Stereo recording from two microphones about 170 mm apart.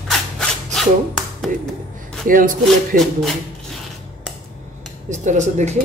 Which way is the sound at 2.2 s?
55° right (ahead or behind).